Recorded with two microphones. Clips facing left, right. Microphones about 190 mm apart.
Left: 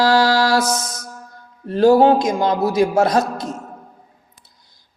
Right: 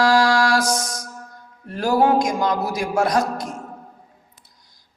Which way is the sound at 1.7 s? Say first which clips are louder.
Left 6 dB; 25° left (ahead or behind).